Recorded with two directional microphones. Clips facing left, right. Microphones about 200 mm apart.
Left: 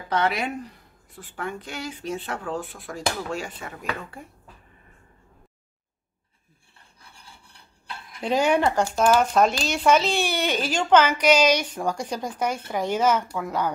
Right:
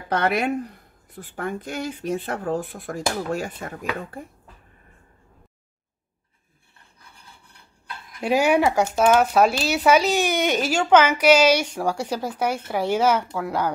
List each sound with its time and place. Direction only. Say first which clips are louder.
0.1 s a woman's voice: right 3 dB; 50° right (ahead or behind)
8.2 s speech: right 2 dB; 10° right (ahead or behind)